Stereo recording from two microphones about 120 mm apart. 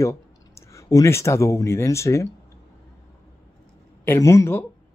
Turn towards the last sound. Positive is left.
turn(degrees=25)  # may be behind; listen again after turning